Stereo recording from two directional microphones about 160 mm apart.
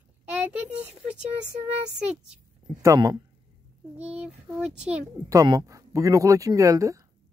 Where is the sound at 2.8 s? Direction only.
20° right (ahead or behind).